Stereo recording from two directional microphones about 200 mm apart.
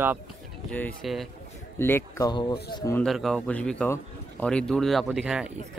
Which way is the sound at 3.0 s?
Centre (ahead or behind).